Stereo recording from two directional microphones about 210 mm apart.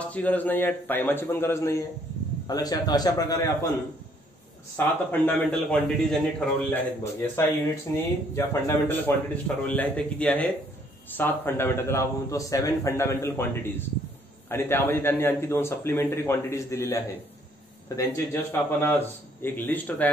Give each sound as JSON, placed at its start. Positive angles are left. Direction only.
{"t": 0.0, "sound": "a man's voice", "side_deg": 5}
{"t": 4.7, "sound": "a man's voice", "side_deg": 10}